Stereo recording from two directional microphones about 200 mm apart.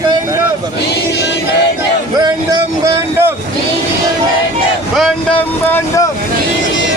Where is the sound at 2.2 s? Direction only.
20° right (ahead or behind).